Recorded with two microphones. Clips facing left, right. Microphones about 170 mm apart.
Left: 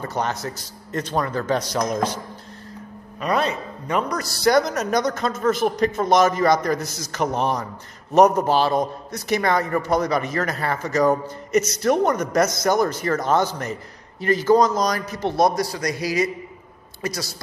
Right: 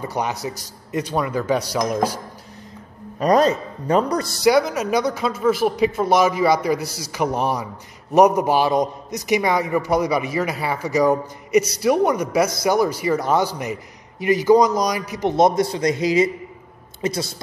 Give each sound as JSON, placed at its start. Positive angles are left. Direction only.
{"t": 0.0, "sound": "speech", "side_deg": -10}
{"t": 3.2, "sound": "a man's voice", "side_deg": -40}
{"t": 4.3, "sound": "speech", "side_deg": -10}